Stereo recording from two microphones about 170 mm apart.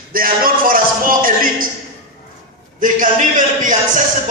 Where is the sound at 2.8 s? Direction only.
50° right (ahead or behind).